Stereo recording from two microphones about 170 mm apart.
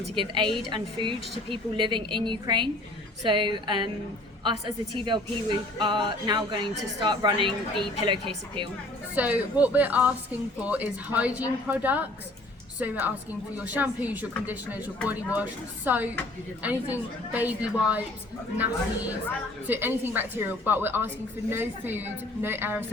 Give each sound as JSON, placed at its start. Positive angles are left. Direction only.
{"t": 0.2, "sound": "speech", "side_deg": -30}
{"t": 4.9, "sound": "speech", "side_deg": -30}
{"t": 9.1, "sound": "a woman's voice", "side_deg": -10}